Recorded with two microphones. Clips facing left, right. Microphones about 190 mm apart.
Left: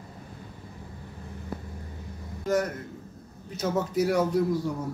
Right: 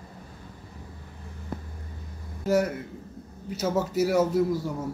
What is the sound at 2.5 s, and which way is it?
A man's voice, 10° right (ahead or behind).